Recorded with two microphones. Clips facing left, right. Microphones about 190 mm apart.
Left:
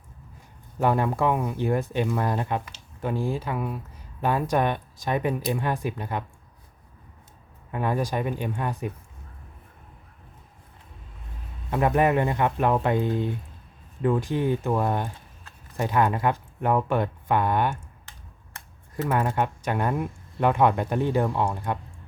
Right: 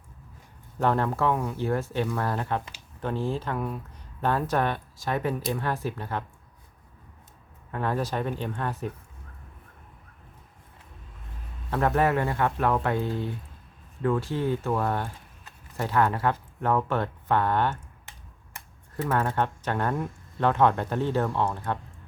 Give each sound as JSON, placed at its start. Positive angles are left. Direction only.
{"t": 0.8, "sound": "speech", "side_deg": 10}
{"t": 7.7, "sound": "speech", "side_deg": 15}
{"t": 11.7, "sound": "speech", "side_deg": 15}
{"t": 19.0, "sound": "speech", "side_deg": 15}